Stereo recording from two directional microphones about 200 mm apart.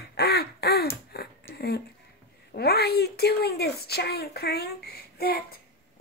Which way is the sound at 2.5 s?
50° left (ahead or behind).